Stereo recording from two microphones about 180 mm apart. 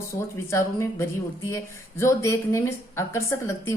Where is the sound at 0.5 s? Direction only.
15° left (ahead or behind).